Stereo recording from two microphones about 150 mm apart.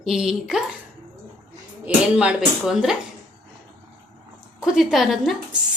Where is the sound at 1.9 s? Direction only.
10° right (ahead or behind).